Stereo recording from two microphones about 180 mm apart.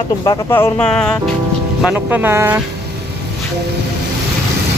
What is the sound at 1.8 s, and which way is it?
Speech, 5° right (ahead or behind).